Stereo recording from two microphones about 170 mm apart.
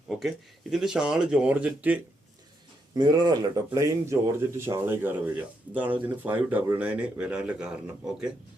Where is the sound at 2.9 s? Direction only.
25° right (ahead or behind); by 8.3 s 5° right (ahead or behind).